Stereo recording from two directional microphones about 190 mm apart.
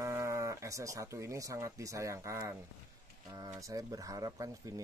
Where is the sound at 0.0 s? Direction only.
15° right (ahead or behind).